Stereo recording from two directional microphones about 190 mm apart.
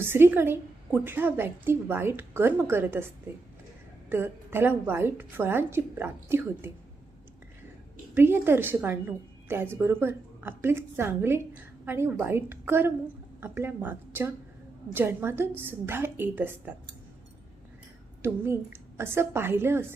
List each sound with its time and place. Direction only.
0.0 s a woman's voice: 10° right (ahead or behind)
4.1 s a woman's voice: 10° right (ahead or behind)
8.1 s a woman's voice: 10° right (ahead or behind)
18.2 s a woman's voice: 10° right (ahead or behind)